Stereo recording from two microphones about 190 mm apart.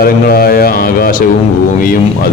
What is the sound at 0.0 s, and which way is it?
Speech, 50° left (ahead or behind).